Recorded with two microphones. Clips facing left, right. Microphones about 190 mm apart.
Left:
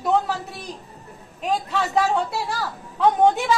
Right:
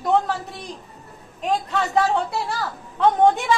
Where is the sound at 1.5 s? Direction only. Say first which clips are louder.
Right 1 dB; centre (ahead or behind).